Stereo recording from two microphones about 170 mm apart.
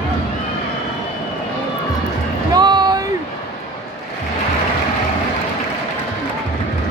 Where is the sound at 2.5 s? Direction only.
25° right (ahead or behind).